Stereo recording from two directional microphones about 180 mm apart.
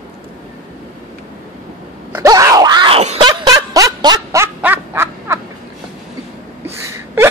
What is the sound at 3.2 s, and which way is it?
Snicker, 20° right (ahead or behind).